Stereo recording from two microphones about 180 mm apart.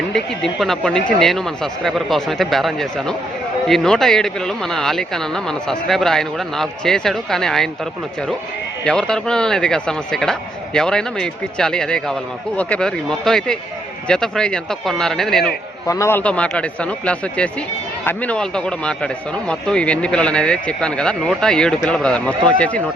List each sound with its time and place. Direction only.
0.1 s a man's voice: centre (ahead or behind)
8.8 s a man's voice: 5° left (ahead or behind)
15.9 s a man's voice: 15° left (ahead or behind)